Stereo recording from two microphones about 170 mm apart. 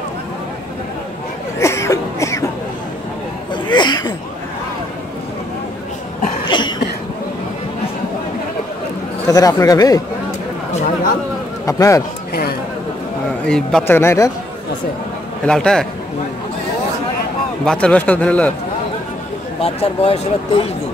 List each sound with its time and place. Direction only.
1.6 s a sound: 15° left (ahead or behind)
3.6 s a sound: 25° left (ahead or behind)
6.5 s cough: 30° left (ahead or behind)
9.3 s speech: 20° left (ahead or behind)
11.6 s a man's voice: 20° left (ahead or behind)
13.5 s a man's voice: 5° left (ahead or behind)
13.9 s a man's voice: 15° left (ahead or behind)
15.4 s a man's voice: 5° left (ahead or behind)
17.6 s a man's voice: 5° left (ahead or behind)
19.6 s speech: 35° left (ahead or behind)